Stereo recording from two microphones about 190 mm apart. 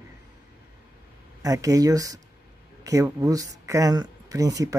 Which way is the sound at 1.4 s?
15° right (ahead or behind).